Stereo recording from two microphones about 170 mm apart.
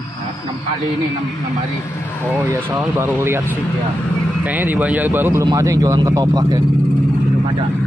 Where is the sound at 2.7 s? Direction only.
15° right (ahead or behind).